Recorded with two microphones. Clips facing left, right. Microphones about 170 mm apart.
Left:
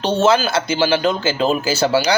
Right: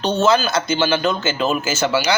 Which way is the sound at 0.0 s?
30° left (ahead or behind).